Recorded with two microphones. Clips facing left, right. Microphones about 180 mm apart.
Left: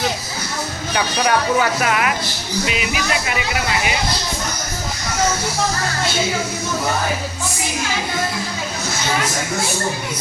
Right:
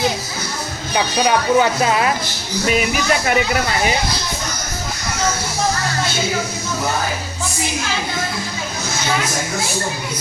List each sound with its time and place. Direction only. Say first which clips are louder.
0.9 s speech: right 2 dB; 25° right (ahead or behind)
2.6 s speech: right 7 dB; 45° right (ahead or behind)